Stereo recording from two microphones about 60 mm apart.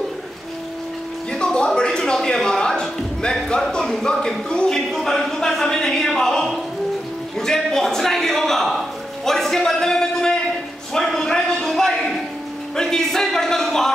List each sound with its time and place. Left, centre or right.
1.3 s music: centre
1.8 s speech: centre
7.3 s a sound: centre
12.7 s speech: centre